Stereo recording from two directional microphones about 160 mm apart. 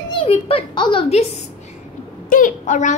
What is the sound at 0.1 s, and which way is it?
A child's voice, 35° left (ahead or behind).